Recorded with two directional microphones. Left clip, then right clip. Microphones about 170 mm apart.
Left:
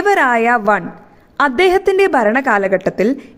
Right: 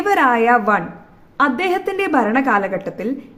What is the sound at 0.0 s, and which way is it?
A woman's voice, 45° left (ahead or behind).